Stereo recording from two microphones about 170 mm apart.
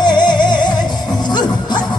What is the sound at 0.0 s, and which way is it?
Music, 25° left (ahead or behind).